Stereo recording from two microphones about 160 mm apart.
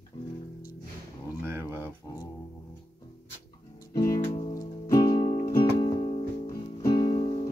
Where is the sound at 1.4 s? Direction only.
15° right (ahead or behind).